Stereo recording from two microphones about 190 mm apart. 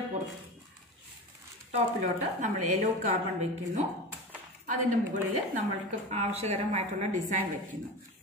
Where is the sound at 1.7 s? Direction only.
40° right (ahead or behind).